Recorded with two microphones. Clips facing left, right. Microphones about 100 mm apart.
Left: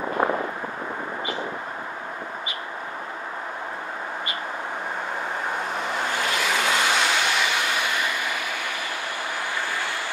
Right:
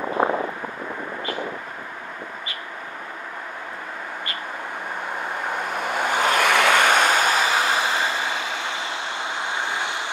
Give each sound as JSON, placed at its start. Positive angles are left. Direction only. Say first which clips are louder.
{"t": 5.9, "sound": "vehicle", "louder": "right 7 dB", "side_deg": -55}